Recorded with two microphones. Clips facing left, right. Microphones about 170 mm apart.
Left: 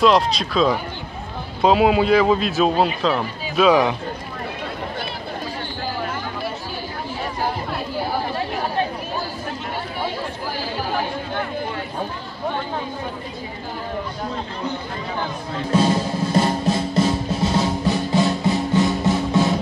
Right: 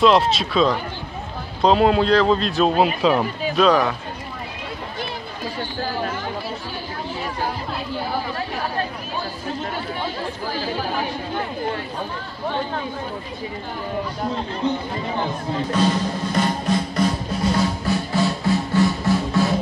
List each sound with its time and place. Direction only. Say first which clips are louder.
0.0 s a man's voice: right 1 dB; centre (ahead or behind)
3.0 s speech: right 3 dB; 10° right (ahead or behind)
3.5 s speech: left 2 dB; 10° left (ahead or behind)
15.7 s drum: left 3 dB; 25° left (ahead or behind)